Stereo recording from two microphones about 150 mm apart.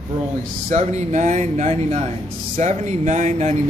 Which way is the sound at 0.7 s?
50° right (ahead or behind).